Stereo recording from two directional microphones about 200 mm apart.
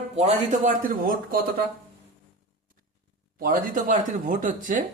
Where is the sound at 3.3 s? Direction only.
45° right (ahead or behind).